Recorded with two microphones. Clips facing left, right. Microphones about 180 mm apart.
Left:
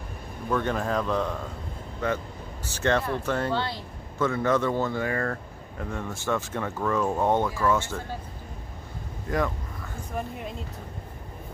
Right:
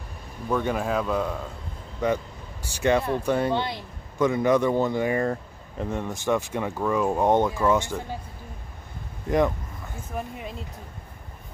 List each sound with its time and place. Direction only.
0.5 s speech: 10° right (ahead or behind)
9.3 s speech: 20° right (ahead or behind)
10.1 s speech: centre (ahead or behind)